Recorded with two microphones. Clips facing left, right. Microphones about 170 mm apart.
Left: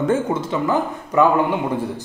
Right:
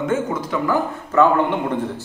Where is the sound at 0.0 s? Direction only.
30° left (ahead or behind).